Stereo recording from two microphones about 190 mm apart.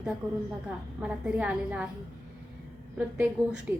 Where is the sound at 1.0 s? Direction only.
5° right (ahead or behind).